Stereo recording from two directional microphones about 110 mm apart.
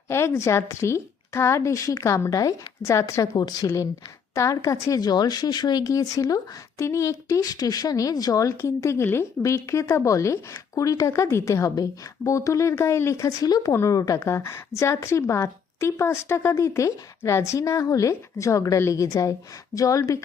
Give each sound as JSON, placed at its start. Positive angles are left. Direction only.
{"t": 0.1, "sound": "speech", "side_deg": 25}
{"t": 3.3, "sound": "speech", "side_deg": 40}